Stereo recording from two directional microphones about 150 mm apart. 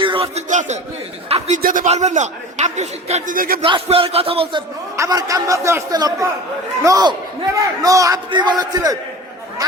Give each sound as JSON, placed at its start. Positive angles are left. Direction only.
{"t": 0.0, "sound": "a sound", "side_deg": -35}
{"t": 0.4, "sound": "a man's voice", "side_deg": -55}
{"t": 3.3, "sound": "speech", "side_deg": -75}
{"t": 3.6, "sound": "a man's voice", "side_deg": -40}
{"t": 4.9, "sound": "a man's voice", "side_deg": -25}